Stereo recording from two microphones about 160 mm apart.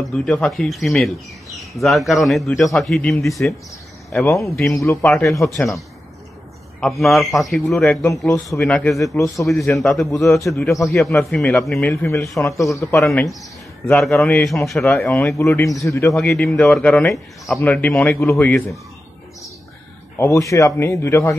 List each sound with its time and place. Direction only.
0.0 s speech: 5° left (ahead or behind)
5.0 s speech: 5° left (ahead or behind)
6.8 s speech: centre (ahead or behind)
9.1 s a man's voice: 20° left (ahead or behind)
9.5 s speech: centre (ahead or behind)
11.9 s a man's voice: 20° left (ahead or behind)
13.0 s a man's voice: centre (ahead or behind); by 16.2 s 20° left (ahead or behind)
16.2 s speech: 5° left (ahead or behind)
20.2 s speech: 20° left (ahead or behind)